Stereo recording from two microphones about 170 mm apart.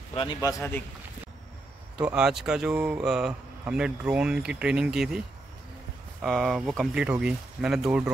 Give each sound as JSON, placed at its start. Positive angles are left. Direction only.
{"t": 0.1, "sound": "speech", "side_deg": 30}
{"t": 2.0, "sound": "speech", "side_deg": -5}
{"t": 6.2, "sound": "speech", "side_deg": 0}